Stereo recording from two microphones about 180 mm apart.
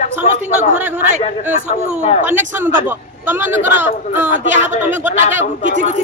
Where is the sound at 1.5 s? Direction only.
40° right (ahead or behind).